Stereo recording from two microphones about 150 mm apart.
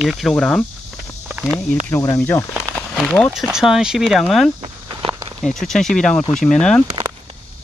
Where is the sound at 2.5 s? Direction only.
Centre (ahead or behind).